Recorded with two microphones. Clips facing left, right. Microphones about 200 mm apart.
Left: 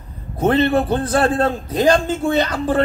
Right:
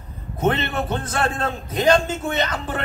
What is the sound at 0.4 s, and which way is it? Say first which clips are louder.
A man's voice: left 6 dB; 35° left (ahead or behind).